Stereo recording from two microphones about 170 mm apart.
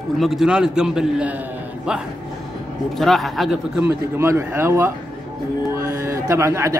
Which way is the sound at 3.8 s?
15° right (ahead or behind).